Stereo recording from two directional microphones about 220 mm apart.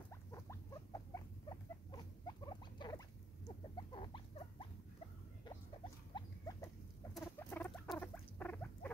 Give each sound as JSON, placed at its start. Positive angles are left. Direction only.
{"t": 0.1, "sound": "rodents", "side_deg": 15}
{"t": 6.1, "sound": "rodents", "side_deg": 15}